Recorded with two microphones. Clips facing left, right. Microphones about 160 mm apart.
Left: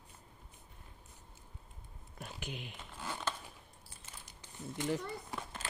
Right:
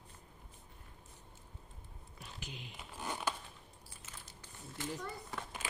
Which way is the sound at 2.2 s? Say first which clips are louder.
Left 5 dB; 55° left (ahead or behind).